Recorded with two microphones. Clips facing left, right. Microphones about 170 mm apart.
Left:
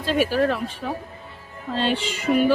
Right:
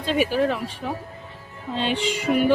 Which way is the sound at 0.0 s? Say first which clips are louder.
Left 1 dB; 15° right (ahead or behind).